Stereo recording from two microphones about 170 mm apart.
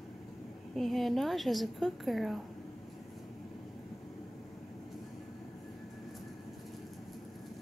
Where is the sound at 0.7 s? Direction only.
Centre (ahead or behind).